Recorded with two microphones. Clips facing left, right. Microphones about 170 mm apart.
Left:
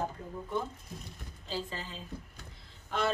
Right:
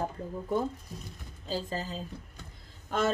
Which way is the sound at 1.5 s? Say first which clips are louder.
Right 5 dB; 40° right (ahead or behind).